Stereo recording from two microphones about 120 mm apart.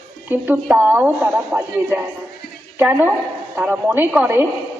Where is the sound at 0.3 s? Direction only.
15° right (ahead or behind).